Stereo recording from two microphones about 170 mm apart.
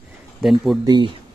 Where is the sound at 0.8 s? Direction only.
25° right (ahead or behind).